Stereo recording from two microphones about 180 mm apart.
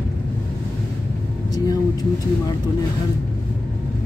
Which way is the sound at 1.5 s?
20° left (ahead or behind).